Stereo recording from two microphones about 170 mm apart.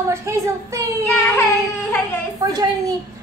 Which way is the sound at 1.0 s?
10° left (ahead or behind).